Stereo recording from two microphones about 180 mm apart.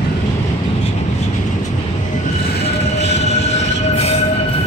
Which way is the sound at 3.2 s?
35° left (ahead or behind).